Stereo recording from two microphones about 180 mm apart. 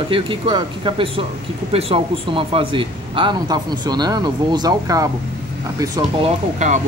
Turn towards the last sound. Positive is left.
turn(degrees=-40)  # may be behind; listen again after turning